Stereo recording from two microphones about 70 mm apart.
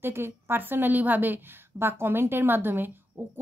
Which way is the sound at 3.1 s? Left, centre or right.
Right.